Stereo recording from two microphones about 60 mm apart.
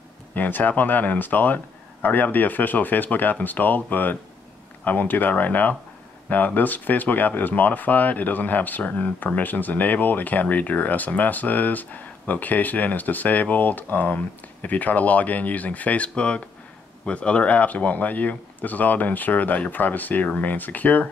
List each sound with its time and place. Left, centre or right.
0.3 s speech: left